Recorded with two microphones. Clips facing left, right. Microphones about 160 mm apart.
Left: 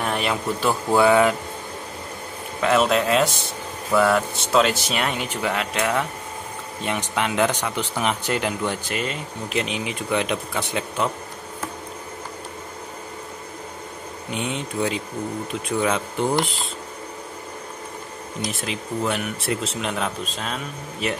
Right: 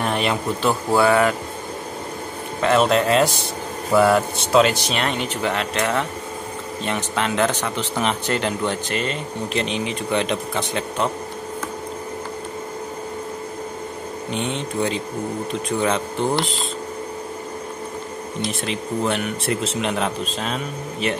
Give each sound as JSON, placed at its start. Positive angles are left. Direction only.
{"t": 0.0, "sound": "a sound", "side_deg": 0}
{"t": 0.6, "sound": "speech", "side_deg": 10}
{"t": 2.6, "sound": "speech", "side_deg": 5}
{"t": 14.3, "sound": "speech", "side_deg": 5}
{"t": 18.5, "sound": "speech", "side_deg": 5}